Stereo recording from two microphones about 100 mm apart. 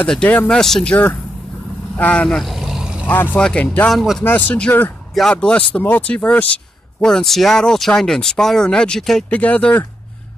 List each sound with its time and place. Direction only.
0.0 s speech: 10° left (ahead or behind)
0.6 s speech: 5° left (ahead or behind)
2.0 s vehicle: 10° left (ahead or behind); by 3.1 s 10° right (ahead or behind)
3.3 s speech: 10° left (ahead or behind)
3.9 s speech: centre (ahead or behind)
4.2 s speech: 20° left (ahead or behind)